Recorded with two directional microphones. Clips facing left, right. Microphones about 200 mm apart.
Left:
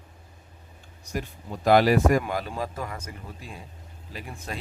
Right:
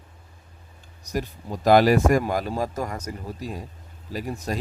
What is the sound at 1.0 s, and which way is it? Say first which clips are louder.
Speech: right 4 dB; 40° right (ahead or behind).